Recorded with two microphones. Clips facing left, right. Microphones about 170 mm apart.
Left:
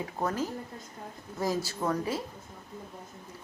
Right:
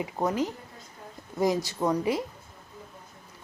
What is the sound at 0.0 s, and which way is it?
A woman's voice, 15° right (ahead or behind).